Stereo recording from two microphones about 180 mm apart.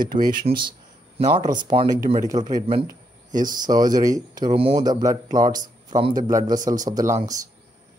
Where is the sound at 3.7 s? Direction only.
20° right (ahead or behind).